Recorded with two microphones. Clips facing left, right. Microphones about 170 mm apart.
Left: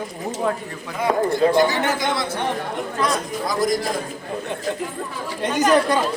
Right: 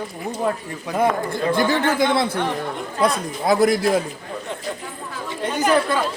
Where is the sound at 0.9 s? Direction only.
50° right (ahead or behind).